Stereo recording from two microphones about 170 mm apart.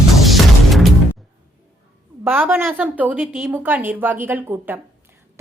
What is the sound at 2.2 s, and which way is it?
A woman's voice, 10° right (ahead or behind).